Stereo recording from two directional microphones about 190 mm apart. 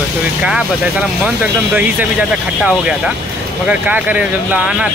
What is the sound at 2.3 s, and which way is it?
Speech, 5° right (ahead or behind).